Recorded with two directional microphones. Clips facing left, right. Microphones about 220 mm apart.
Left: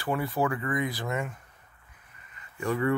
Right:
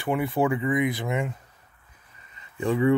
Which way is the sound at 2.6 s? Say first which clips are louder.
Right 5 dB; 15° right (ahead or behind).